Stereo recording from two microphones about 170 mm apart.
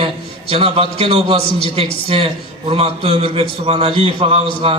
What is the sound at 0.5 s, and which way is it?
A man's voice, 35° right (ahead or behind).